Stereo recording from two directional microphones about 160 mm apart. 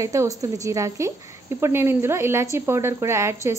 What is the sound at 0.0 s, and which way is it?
A woman's voice, 20° right (ahead or behind).